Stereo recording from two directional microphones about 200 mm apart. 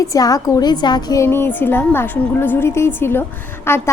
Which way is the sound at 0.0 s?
15° left (ahead or behind).